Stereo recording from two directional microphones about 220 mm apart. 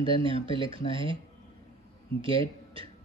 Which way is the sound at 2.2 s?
25° right (ahead or behind).